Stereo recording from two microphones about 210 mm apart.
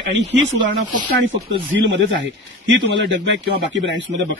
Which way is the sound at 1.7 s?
60° right (ahead or behind).